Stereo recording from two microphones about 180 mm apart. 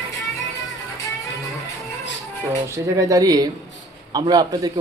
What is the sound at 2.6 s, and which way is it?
Speech, 15° right (ahead or behind).